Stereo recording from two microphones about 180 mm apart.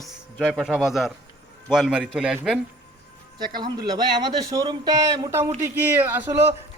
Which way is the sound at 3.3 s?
25° right (ahead or behind).